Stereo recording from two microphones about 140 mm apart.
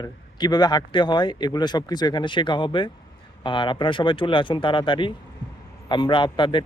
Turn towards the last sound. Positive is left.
turn(degrees=35)  # may be behind; listen again after turning